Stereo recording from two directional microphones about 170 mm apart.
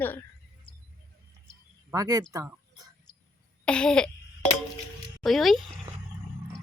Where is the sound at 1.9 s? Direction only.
20° right (ahead or behind).